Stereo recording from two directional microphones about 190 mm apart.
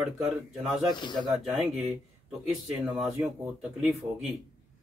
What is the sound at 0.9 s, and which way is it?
Speech, 25° left (ahead or behind).